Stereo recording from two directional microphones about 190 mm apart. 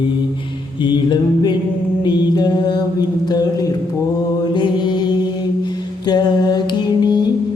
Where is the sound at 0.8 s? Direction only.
25° left (ahead or behind).